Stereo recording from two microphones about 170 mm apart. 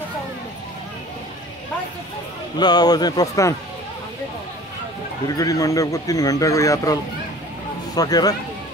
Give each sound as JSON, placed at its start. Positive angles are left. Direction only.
{"t": 2.6, "sound": "a man's voice", "side_deg": 25}
{"t": 5.4, "sound": "a man's voice", "side_deg": 20}